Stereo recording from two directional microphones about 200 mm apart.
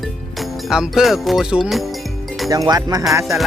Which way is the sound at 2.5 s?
20° right (ahead or behind).